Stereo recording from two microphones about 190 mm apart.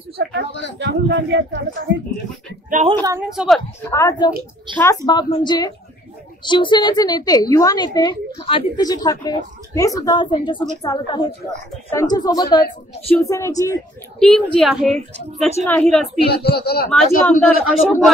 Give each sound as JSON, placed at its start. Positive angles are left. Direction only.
{"t": 0.2, "sound": "speech", "side_deg": -65}
{"t": 3.0, "sound": "speech", "side_deg": -15}
{"t": 3.3, "sound": "a woman's voice", "side_deg": 0}
{"t": 3.9, "sound": "a man's voice", "side_deg": 15}
{"t": 14.2, "sound": "a woman's voice", "side_deg": 5}
{"t": 16.3, "sound": "speech", "side_deg": 55}
{"t": 16.9, "sound": "a man's voice", "side_deg": 5}